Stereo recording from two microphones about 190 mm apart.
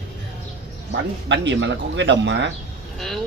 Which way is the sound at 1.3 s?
70° right (ahead or behind).